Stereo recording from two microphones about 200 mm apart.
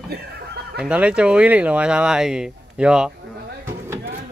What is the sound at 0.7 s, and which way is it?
Speech, 5° right (ahead or behind).